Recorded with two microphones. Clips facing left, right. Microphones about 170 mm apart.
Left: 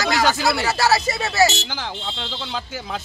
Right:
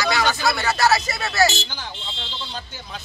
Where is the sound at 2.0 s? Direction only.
75° left (ahead or behind).